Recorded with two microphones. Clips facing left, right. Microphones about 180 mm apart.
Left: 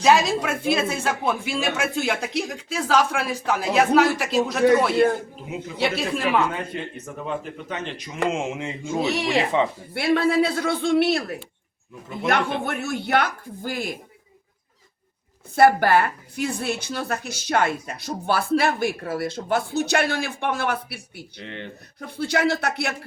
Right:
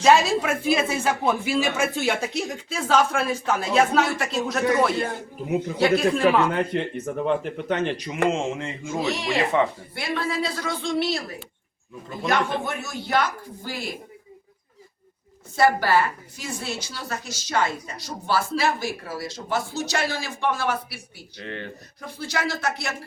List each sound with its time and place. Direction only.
0.0 s speech: centre (ahead or behind)
6.0 s speech: centre (ahead or behind)
6.5 s speech: 60° right (ahead or behind)
8.2 s speech: 5° left (ahead or behind)
9.9 s a woman's voice: 60° left (ahead or behind)
12.5 s a woman's voice: 60° left (ahead or behind)
15.5 s a woman's voice: 55° left (ahead or behind)
21.3 s speech: 20° left (ahead or behind)
22.0 s a woman's voice: 60° left (ahead or behind)